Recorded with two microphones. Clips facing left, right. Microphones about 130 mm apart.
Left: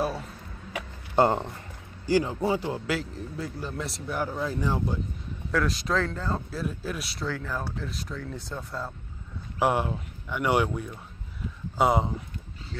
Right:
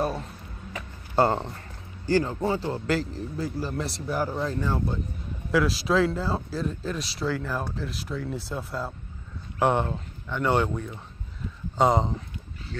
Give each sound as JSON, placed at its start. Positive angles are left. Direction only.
{"t": 1.1, "sound": "speech", "side_deg": 20}
{"t": 2.9, "sound": "speech", "side_deg": 0}
{"t": 4.5, "sound": "speech", "side_deg": 15}
{"t": 5.5, "sound": "speech", "side_deg": -5}
{"t": 9.6, "sound": "speech", "side_deg": 10}